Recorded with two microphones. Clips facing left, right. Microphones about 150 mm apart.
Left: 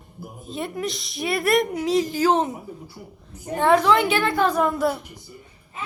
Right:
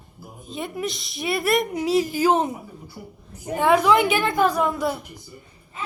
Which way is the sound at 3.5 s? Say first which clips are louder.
Even; 5° right (ahead or behind).